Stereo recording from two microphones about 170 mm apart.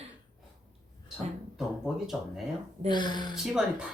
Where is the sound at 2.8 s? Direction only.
25° left (ahead or behind).